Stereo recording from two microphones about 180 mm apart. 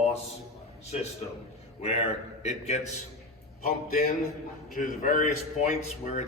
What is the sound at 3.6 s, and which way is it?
A man's voice, 55° left (ahead or behind).